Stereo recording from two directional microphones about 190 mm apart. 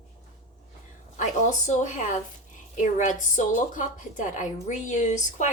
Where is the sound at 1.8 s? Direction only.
40° left (ahead or behind).